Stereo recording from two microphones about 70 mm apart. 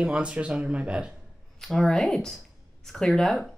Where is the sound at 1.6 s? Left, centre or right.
Centre.